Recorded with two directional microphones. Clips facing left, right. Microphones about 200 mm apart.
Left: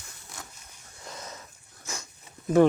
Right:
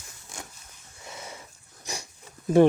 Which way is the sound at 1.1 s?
10° right (ahead or behind).